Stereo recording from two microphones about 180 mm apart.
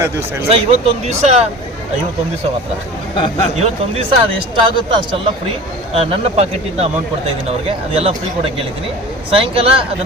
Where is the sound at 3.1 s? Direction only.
30° left (ahead or behind).